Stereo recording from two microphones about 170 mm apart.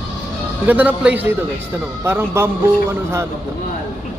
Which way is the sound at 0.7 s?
10° right (ahead or behind).